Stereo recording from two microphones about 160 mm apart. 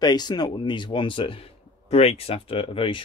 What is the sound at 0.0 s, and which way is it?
Speech, 25° left (ahead or behind).